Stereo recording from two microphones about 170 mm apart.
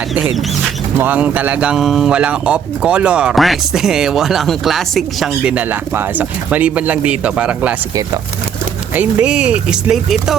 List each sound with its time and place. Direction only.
0.1 s speech: 5° right (ahead or behind)
9.0 s speech: 5° right (ahead or behind)